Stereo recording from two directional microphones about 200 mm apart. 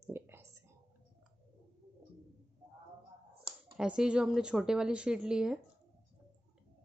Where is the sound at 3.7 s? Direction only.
5° right (ahead or behind).